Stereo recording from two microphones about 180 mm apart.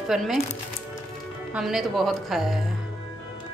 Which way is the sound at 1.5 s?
5° right (ahead or behind).